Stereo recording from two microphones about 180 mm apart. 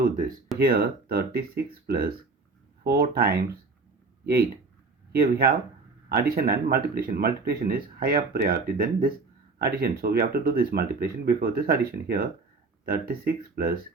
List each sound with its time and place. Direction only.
0.0 s speech: 50° right (ahead or behind)
5.1 s speech: 55° right (ahead or behind)